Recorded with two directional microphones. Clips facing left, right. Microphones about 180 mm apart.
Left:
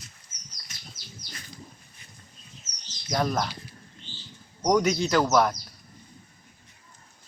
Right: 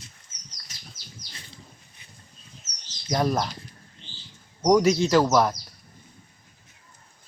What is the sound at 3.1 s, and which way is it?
Speech, 10° right (ahead or behind).